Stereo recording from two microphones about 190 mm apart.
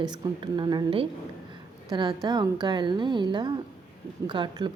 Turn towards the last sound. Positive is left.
turn(degrees=-25)  # may be behind; listen again after turning